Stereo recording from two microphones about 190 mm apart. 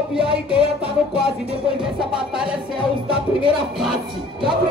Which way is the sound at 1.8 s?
5° right (ahead or behind).